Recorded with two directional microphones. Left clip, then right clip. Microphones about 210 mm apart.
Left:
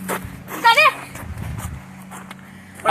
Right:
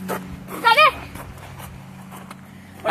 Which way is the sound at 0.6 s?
50° left (ahead or behind).